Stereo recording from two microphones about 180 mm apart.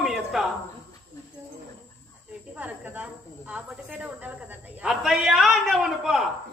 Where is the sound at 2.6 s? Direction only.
10° right (ahead or behind).